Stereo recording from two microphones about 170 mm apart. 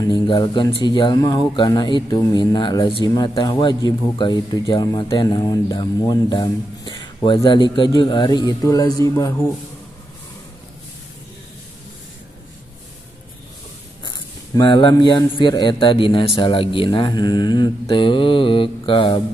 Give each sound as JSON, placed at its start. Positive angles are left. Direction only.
{"t": 0.0, "sound": "a man's voice", "side_deg": 25}
{"t": 14.0, "sound": "a man's voice", "side_deg": 25}